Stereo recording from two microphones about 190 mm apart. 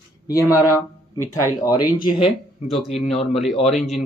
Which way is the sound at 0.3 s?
15° left (ahead or behind).